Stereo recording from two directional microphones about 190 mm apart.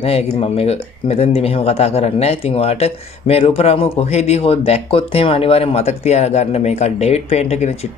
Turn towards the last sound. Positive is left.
turn(degrees=35)  # may be behind; listen again after turning